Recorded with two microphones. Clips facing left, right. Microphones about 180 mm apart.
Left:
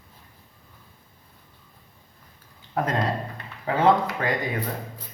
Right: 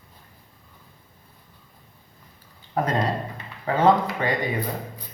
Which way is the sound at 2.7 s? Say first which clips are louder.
Right 1 dB; centre (ahead or behind).